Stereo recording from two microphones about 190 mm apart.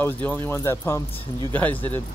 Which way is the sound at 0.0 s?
10° left (ahead or behind).